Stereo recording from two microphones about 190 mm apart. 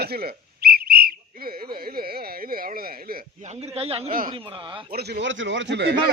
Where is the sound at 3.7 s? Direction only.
30° right (ahead or behind).